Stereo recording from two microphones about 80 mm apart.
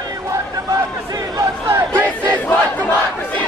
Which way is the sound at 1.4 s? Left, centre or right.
Right.